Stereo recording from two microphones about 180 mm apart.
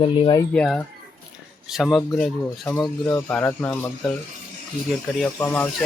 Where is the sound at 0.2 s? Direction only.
25° left (ahead or behind).